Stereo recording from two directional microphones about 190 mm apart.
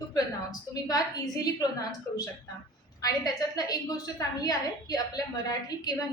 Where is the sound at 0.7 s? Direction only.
20° left (ahead or behind).